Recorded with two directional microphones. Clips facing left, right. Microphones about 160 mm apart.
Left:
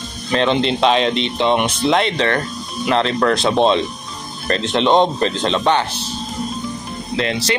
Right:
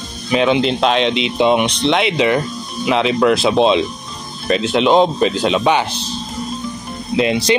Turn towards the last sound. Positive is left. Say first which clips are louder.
# right 5 dB
turn(degrees=-15)  # may be behind; listen again after turning